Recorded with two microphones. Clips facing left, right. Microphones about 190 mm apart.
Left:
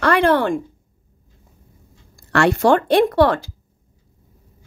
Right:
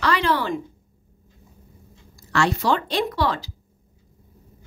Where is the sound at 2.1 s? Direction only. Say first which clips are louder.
Left 5 dB; 55° left (ahead or behind).